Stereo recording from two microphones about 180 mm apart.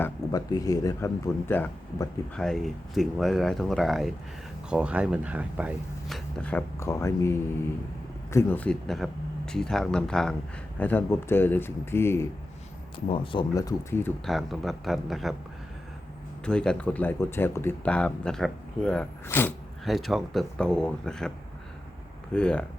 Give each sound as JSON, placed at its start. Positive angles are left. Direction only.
{"t": 0.0, "sound": "speech", "side_deg": 20}
{"t": 13.1, "sound": "speech", "side_deg": 30}
{"t": 14.3, "sound": "speech", "side_deg": 0}
{"t": 16.5, "sound": "speech", "side_deg": 5}